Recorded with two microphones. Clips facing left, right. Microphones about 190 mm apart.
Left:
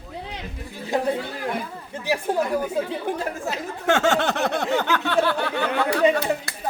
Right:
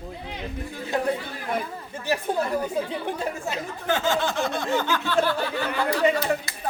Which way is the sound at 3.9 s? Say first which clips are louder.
Left 4 dB; 75° left (ahead or behind).